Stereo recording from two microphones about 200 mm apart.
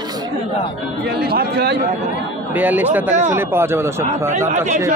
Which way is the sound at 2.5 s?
10° right (ahead or behind).